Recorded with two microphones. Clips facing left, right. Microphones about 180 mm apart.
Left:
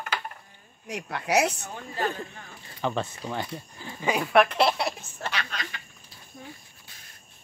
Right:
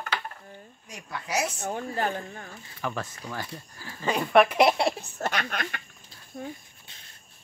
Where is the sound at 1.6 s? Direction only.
55° right (ahead or behind).